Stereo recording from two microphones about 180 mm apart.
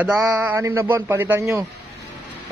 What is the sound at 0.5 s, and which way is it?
Speech, 15° right (ahead or behind).